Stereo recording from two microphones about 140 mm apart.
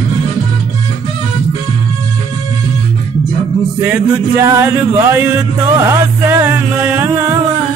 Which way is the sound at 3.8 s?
15° right (ahead or behind).